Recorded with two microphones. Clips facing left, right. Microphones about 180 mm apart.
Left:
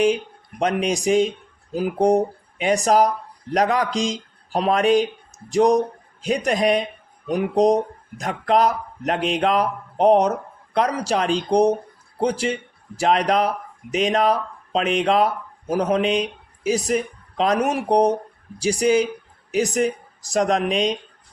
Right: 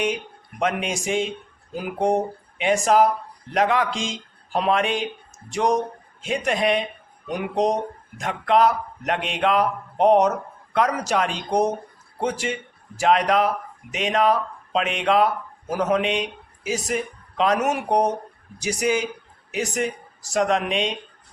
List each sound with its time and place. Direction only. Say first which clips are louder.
0.6 s speech: left 4 dB; 35° left (ahead or behind)
10.8 s speech: left 1 dB; 35° left (ahead or behind)